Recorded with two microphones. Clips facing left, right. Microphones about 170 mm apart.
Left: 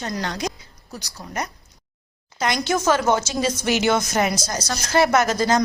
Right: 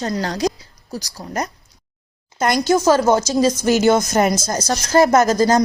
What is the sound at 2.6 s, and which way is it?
A woman's voice, 35° right (ahead or behind).